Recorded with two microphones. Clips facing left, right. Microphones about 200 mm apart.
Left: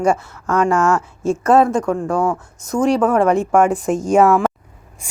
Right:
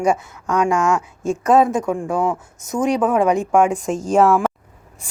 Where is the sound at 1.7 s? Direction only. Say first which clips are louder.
Left 2 dB; 20° right (ahead or behind).